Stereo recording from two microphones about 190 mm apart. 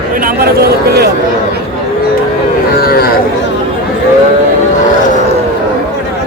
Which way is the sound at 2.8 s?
55° left (ahead or behind).